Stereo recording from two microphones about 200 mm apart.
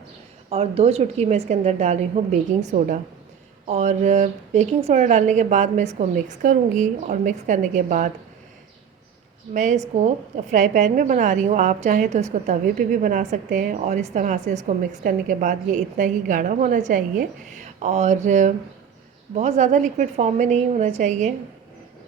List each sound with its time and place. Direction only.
0.5 s a woman's voice: 30° right (ahead or behind)
9.5 s a woman's voice: 35° right (ahead or behind)